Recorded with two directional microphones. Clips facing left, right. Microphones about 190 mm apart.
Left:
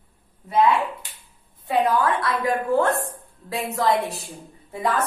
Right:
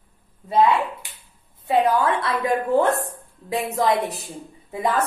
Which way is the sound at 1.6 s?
25° right (ahead or behind).